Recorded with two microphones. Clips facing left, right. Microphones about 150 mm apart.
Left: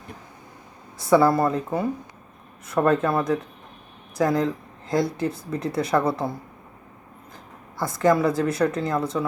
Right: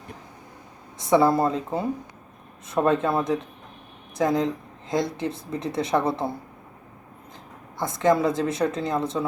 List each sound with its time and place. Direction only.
0.9 s speech: 20° right (ahead or behind)
7.8 s speech: 20° right (ahead or behind)